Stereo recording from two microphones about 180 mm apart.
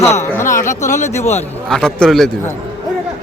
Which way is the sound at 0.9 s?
40° left (ahead or behind).